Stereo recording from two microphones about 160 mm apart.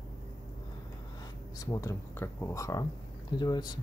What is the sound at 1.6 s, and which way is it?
Speech, 20° left (ahead or behind).